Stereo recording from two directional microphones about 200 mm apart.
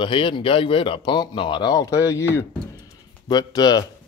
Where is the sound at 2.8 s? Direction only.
20° left (ahead or behind).